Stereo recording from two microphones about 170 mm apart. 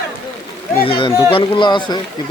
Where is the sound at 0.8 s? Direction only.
30° left (ahead or behind).